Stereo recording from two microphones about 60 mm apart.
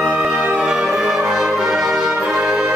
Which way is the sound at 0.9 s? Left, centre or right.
Centre.